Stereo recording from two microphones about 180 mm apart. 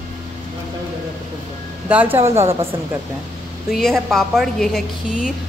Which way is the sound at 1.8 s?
10° right (ahead or behind).